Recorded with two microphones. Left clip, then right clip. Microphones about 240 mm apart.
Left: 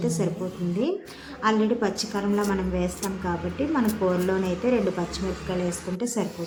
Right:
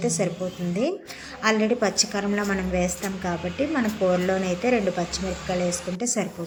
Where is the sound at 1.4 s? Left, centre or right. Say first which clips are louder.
Right 2 dB; centre.